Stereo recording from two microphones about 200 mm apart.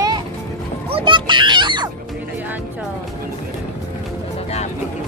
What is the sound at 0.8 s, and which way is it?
Music, 25° right (ahead or behind).